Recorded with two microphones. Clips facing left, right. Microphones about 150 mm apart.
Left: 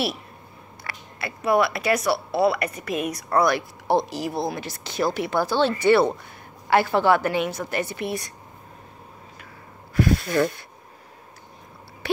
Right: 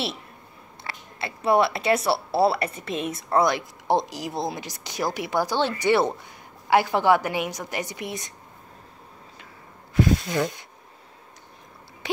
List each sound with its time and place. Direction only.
0.8 s a woman's voice: 25° right (ahead or behind)
9.9 s a woman's voice: 20° right (ahead or behind)